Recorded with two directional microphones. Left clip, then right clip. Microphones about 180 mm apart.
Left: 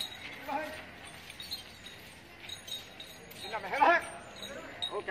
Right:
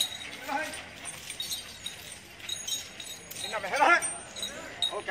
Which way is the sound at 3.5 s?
35° right (ahead or behind).